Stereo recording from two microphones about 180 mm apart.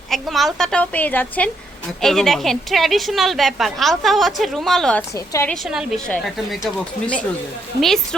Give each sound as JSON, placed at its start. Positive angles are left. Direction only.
{"t": 0.1, "sound": "a woman's voice", "side_deg": 0}
{"t": 5.1, "sound": "a woman's voice", "side_deg": 15}
{"t": 5.5, "sound": "a woman's voice", "side_deg": -5}
{"t": 7.8, "sound": "a woman's voice", "side_deg": 0}